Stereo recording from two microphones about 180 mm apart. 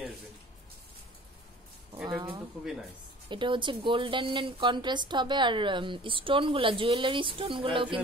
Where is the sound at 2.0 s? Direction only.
25° right (ahead or behind).